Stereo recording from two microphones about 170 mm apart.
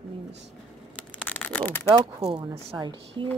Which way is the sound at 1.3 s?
10° left (ahead or behind).